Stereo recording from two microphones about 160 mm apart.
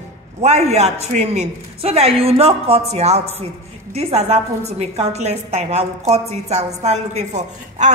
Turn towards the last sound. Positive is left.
turn(degrees=-45)  # may be behind; listen again after turning